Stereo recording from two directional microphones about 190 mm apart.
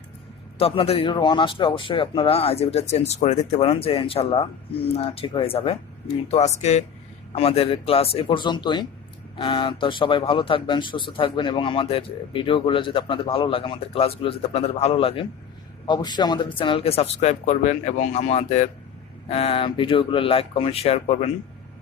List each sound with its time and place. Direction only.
0.6 s a man's voice: 30° left (ahead or behind)